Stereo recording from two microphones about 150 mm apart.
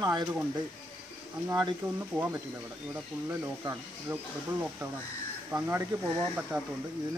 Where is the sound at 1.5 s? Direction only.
25° right (ahead or behind).